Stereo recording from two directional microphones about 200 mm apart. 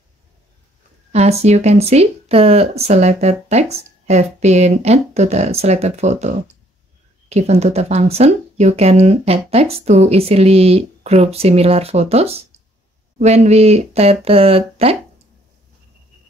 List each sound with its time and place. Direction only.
1.1 s speech: 35° right (ahead or behind)